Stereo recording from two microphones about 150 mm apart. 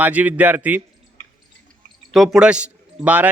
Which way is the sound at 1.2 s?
50° left (ahead or behind).